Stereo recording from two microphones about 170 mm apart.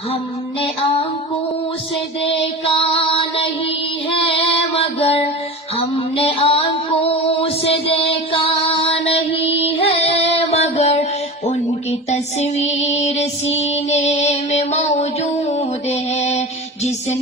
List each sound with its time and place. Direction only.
2.3 s music: 35° left (ahead or behind)
4.1 s child singing: 30° left (ahead or behind)
5.8 s music: 35° left (ahead or behind)
8.8 s child singing: 35° left (ahead or behind)
12.1 s music: 40° left (ahead or behind)